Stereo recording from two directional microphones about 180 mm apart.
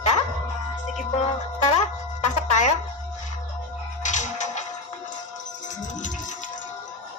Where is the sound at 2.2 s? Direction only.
40° left (ahead or behind).